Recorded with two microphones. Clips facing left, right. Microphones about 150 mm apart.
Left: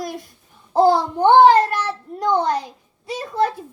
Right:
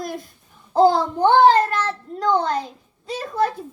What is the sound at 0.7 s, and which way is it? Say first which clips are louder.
A child's voice: even; 15° left (ahead or behind).